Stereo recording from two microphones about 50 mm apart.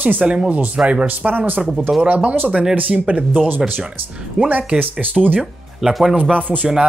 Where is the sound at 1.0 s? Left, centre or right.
Right.